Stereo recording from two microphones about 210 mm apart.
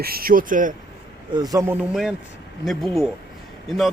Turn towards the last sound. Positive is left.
turn(degrees=0)  # may be behind; listen again after turning